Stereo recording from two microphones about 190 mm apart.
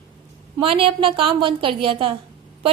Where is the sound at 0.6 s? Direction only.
30° right (ahead or behind).